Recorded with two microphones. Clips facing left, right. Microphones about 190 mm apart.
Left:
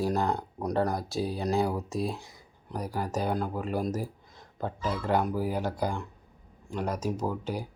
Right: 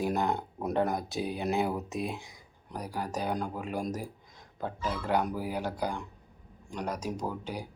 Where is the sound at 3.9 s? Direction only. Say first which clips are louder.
Left 3 dB; 10° right (ahead or behind).